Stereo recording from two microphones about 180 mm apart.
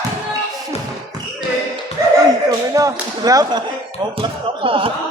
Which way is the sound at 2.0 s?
20° right (ahead or behind).